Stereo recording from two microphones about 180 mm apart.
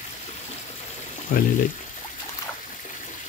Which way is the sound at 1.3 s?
50° left (ahead or behind).